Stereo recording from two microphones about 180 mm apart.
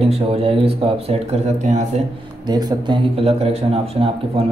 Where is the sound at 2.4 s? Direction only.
20° right (ahead or behind).